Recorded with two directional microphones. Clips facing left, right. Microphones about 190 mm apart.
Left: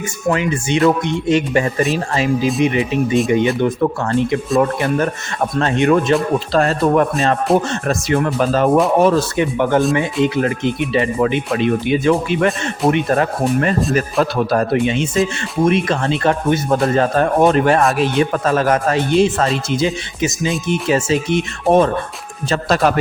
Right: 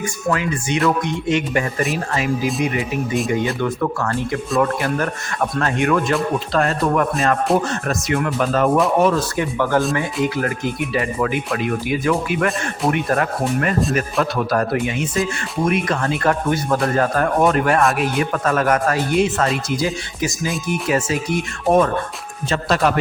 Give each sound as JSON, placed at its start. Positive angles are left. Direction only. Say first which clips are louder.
{"t": 0.3, "sound": "speech", "louder": "left 4 dB", "side_deg": 25}
{"t": 5.5, "sound": "speech", "louder": "left 5 dB", "side_deg": 25}
{"t": 9.4, "sound": "speech", "louder": "left 3 dB", "side_deg": 20}
{"t": 22.4, "sound": "speech", "louder": "left 3 dB", "side_deg": 40}